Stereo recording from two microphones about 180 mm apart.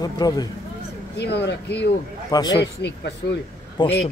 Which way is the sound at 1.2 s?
70° left (ahead or behind).